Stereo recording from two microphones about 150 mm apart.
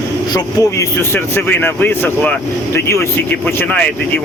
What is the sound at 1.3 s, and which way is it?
Speech, 15° left (ahead or behind).